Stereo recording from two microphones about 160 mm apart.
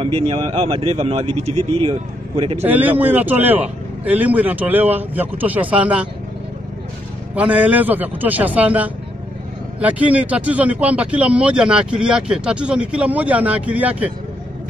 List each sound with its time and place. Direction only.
0.0 s a man's voice: 35° right (ahead or behind)
2.6 s speech: 10° right (ahead or behind)
7.3 s speech: 10° right (ahead or behind)